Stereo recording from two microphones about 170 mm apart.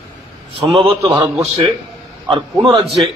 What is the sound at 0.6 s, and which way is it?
Speech, 35° right (ahead or behind).